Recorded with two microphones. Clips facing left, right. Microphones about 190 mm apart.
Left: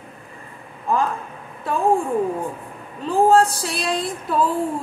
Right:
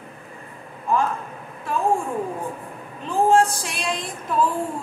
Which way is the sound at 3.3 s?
35° left (ahead or behind).